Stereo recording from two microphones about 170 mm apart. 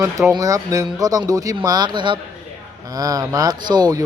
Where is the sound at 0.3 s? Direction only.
20° right (ahead or behind).